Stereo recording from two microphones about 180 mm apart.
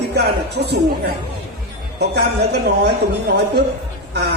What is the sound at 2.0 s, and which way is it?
Speech, 65° right (ahead or behind).